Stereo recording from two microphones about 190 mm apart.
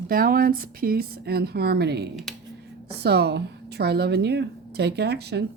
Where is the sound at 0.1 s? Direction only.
50° right (ahead or behind).